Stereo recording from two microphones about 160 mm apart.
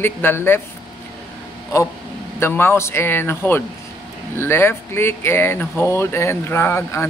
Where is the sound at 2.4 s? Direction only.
15° left (ahead or behind).